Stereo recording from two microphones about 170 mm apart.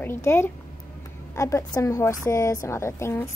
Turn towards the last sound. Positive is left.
turn(degrees=15)  # may be behind; listen again after turning